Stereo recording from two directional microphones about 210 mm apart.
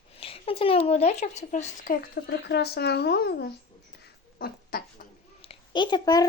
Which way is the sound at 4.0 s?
45° left (ahead or behind).